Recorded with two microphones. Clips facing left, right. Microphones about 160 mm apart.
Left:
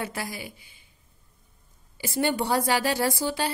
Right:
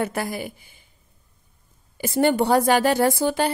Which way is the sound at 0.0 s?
55° right (ahead or behind).